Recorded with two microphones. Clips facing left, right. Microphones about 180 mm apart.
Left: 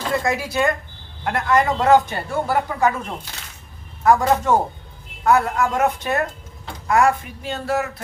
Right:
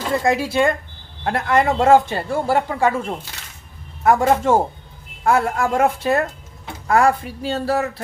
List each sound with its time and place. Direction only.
0.1 s speech: 25° right (ahead or behind)